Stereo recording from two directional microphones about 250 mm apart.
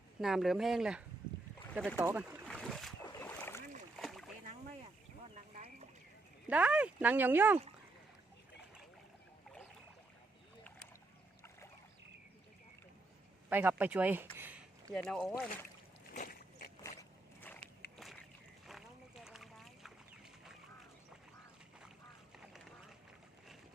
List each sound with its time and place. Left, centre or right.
0.2 s speech: centre
2.5 s a sound: centre
3.0 s boat: centre
4.0 s splash: centre
5.5 s clip-clop: right
6.5 s speech: centre
13.5 s speech: centre
14.3 s a sound: centre
14.9 s speech: centre
16.1 s slosh: left
17.0 s a sound: centre
18.7 s boat: centre